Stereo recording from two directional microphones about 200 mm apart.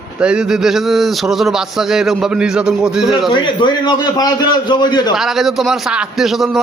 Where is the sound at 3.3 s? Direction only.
20° left (ahead or behind).